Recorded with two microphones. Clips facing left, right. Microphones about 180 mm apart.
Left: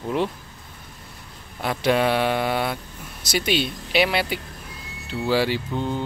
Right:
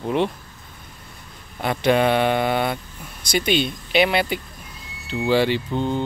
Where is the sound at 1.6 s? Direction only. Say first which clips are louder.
Right 2 dB; centre (ahead or behind).